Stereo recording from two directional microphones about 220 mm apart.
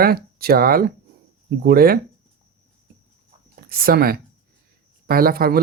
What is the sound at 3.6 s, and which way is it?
Speech, 40° right (ahead or behind).